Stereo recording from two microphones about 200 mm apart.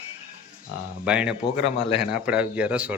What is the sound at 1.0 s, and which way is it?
A man's voice, 5° right (ahead or behind).